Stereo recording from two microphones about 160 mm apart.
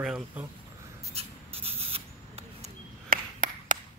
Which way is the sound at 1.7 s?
35° right (ahead or behind).